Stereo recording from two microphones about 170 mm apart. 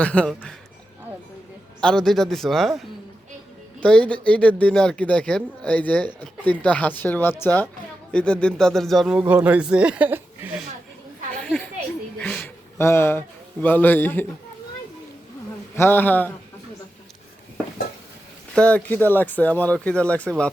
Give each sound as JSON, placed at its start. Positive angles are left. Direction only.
{"t": 0.0, "sound": "speech", "side_deg": 5}
{"t": 1.8, "sound": "a man's voice", "side_deg": 5}
{"t": 11.4, "sound": "a sound", "side_deg": 5}
{"t": 15.7, "sound": "speech", "side_deg": 15}
{"t": 18.5, "sound": "speech", "side_deg": 5}